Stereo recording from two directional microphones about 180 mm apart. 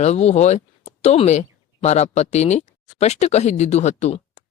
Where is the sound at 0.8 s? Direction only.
35° left (ahead or behind).